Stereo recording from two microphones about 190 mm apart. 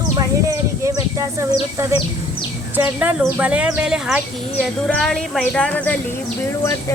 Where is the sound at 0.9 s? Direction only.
15° right (ahead or behind).